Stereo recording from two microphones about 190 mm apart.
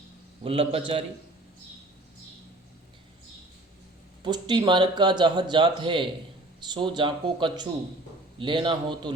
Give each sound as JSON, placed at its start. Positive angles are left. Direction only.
{"t": 0.4, "sound": "speech", "side_deg": -30}
{"t": 4.2, "sound": "speech", "side_deg": -25}